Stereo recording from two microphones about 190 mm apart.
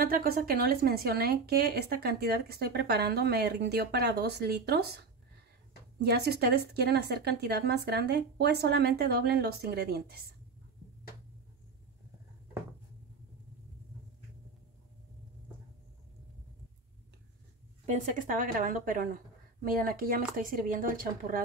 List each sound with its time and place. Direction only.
0.0 s speech: 50° right (ahead or behind)
17.8 s a woman's voice: 40° right (ahead or behind)